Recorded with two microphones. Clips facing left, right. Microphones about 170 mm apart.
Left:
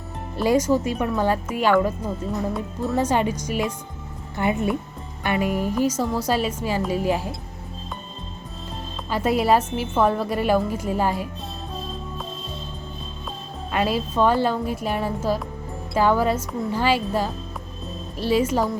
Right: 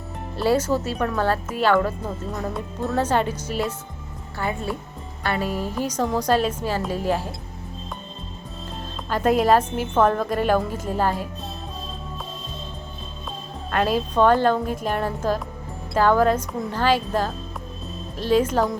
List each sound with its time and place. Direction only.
0.3 s speech: 10° left (ahead or behind)
2.0 s speech: centre (ahead or behind)
3.0 s a woman's voice: 10° left (ahead or behind)
9.0 s speech: 5° left (ahead or behind)
13.7 s music: 5° left (ahead or behind)
14.1 s speech: 10° left (ahead or behind)